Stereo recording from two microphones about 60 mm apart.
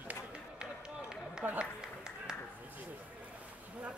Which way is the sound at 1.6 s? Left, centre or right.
Centre.